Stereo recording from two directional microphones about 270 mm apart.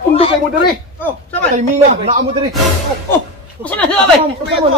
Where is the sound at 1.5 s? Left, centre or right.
Right.